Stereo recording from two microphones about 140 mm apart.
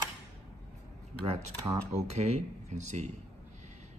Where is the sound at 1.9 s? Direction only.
50° right (ahead or behind).